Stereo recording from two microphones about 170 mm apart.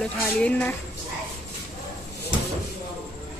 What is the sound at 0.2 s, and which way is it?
Speech, 10° left (ahead or behind).